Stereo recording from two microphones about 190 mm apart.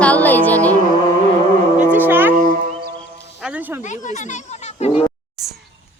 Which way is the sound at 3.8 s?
40° left (ahead or behind).